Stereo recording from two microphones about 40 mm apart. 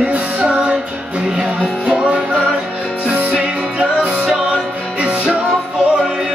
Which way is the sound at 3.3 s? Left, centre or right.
Right.